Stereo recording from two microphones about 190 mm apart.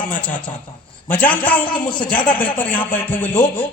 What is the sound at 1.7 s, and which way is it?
Speech, 25° left (ahead or behind).